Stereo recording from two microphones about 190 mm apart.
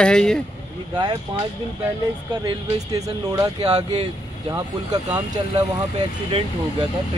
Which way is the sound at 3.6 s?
30° right (ahead or behind).